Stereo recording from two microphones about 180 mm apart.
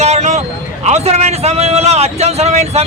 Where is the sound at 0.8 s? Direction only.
40° right (ahead or behind).